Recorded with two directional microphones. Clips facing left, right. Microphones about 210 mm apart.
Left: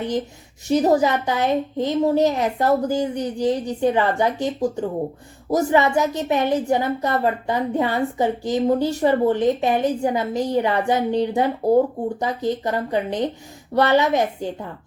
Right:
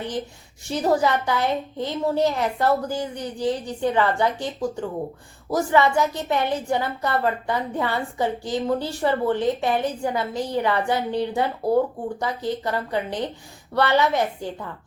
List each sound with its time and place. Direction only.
0.7 s a woman's voice: 20° left (ahead or behind)